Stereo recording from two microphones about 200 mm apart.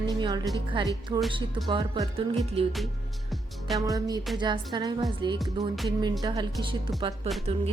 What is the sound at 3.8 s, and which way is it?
Speech, 20° right (ahead or behind).